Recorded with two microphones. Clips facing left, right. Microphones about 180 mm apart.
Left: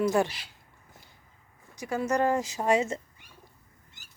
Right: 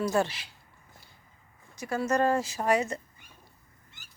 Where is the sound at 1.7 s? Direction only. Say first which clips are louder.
Even; 15° left (ahead or behind).